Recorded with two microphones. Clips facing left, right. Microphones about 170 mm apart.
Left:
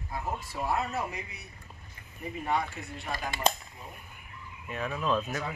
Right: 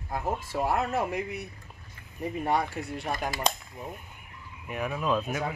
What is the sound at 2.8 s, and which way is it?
Speech, 55° right (ahead or behind).